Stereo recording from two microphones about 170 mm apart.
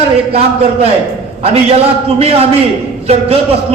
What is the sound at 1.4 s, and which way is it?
A man's voice, 35° right (ahead or behind).